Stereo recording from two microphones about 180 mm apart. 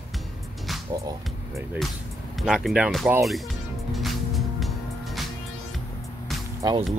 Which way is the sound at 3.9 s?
Centre (ahead or behind).